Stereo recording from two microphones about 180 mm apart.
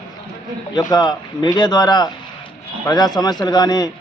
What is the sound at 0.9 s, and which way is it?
A man's voice, 25° left (ahead or behind).